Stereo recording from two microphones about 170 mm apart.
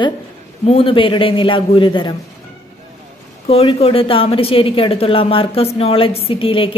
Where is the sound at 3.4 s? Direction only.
35° left (ahead or behind).